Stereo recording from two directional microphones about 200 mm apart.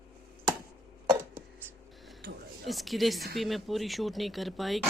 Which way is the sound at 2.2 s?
50° right (ahead or behind).